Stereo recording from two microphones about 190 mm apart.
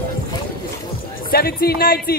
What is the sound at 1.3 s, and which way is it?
Speech, 50° left (ahead or behind).